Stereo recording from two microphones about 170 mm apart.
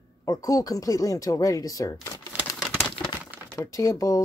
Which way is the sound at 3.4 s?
20° left (ahead or behind).